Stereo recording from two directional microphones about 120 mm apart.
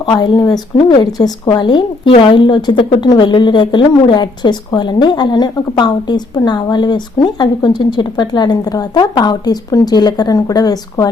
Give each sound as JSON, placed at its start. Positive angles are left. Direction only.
{"t": 0.0, "sound": "a woman's voice", "side_deg": 40}
{"t": 2.0, "sound": "a woman's voice", "side_deg": 50}